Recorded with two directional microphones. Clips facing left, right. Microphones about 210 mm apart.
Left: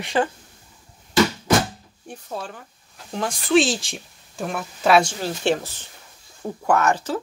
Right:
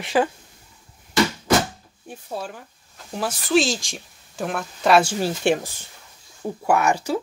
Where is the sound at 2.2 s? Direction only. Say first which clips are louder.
Right 1 dB; 10° right (ahead or behind).